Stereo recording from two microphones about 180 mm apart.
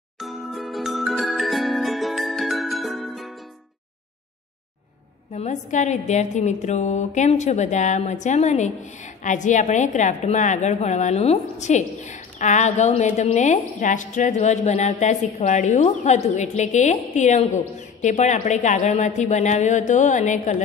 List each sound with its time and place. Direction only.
0.2 s music: centre (ahead or behind)
5.3 s a woman's voice: 40° left (ahead or behind)